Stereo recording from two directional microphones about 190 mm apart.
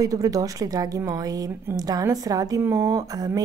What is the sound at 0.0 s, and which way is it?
A woman's voice, 20° right (ahead or behind).